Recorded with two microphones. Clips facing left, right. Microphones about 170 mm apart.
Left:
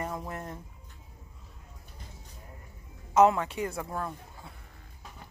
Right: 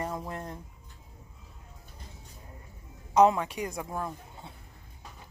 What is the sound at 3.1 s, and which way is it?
A man's voice, 15° right (ahead or behind).